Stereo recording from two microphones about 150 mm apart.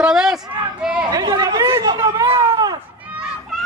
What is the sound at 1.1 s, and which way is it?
Chatter, 30° right (ahead or behind).